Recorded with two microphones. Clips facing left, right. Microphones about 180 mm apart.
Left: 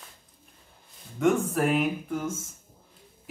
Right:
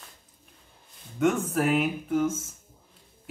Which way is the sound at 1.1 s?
Centre (ahead or behind).